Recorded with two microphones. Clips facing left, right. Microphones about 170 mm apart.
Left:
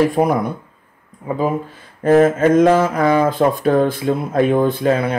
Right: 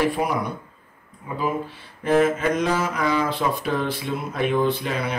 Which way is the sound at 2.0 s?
45° left (ahead or behind).